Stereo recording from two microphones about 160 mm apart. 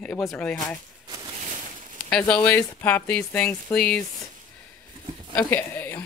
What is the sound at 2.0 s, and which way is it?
Speech, 5° left (ahead or behind).